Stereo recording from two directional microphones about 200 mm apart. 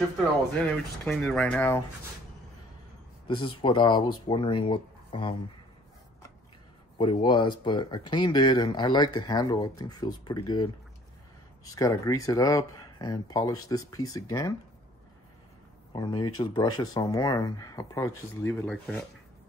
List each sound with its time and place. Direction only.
0.6 s speech: centre (ahead or behind)
3.3 s speech: 25° left (ahead or behind)
7.0 s speech: 25° left (ahead or behind)
15.9 s speech: 20° left (ahead or behind)